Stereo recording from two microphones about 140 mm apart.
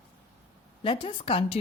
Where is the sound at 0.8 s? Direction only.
35° left (ahead or behind).